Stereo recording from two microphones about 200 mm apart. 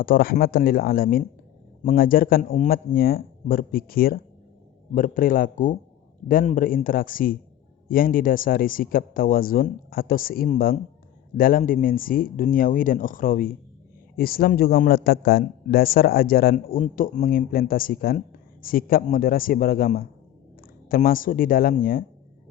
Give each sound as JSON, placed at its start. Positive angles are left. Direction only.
{"t": 0.0, "sound": "a man's voice", "side_deg": 45}